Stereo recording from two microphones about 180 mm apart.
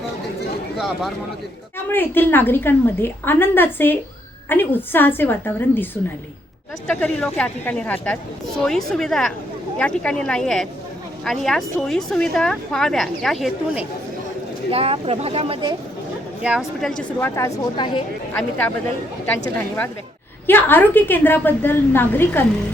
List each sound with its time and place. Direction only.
1.9 s a woman's voice: 10° left (ahead or behind)
14.7 s speech: 30° right (ahead or behind)
16.4 s a woman's voice: 5° right (ahead or behind)
17.0 s a woman's voice: 10° left (ahead or behind); by 18.0 s 25° left (ahead or behind)
19.5 s a woman's voice: 10° left (ahead or behind)